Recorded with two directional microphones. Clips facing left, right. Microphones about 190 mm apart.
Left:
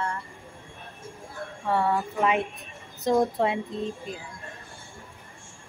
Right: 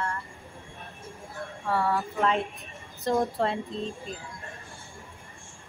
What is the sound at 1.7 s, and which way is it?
Music, 20° left (ahead or behind).